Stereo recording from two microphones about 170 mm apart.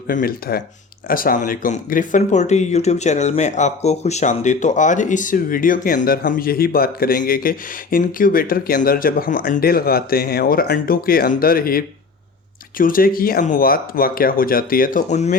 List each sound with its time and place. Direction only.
0.1 s speech: 60° left (ahead or behind)